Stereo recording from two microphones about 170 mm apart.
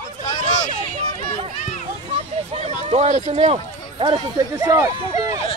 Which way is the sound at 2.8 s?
40° right (ahead or behind).